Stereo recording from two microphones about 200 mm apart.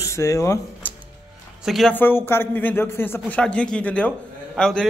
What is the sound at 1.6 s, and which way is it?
A man's voice, centre (ahead or behind).